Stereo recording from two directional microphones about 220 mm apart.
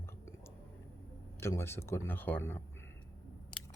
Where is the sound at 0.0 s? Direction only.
10° left (ahead or behind).